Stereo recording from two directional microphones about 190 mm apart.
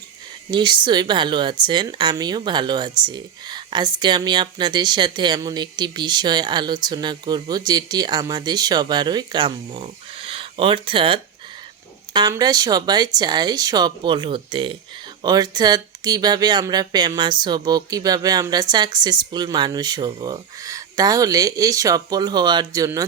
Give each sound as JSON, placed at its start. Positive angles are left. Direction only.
{"t": 0.5, "sound": "speech", "side_deg": -25}